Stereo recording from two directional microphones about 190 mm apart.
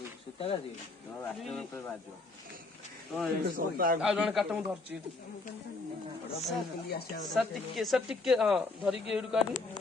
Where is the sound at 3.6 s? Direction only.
50° right (ahead or behind).